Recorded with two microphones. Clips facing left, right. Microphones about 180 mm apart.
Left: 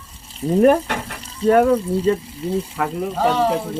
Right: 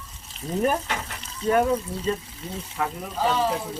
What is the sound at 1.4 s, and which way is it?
Speech, 65° left (ahead or behind).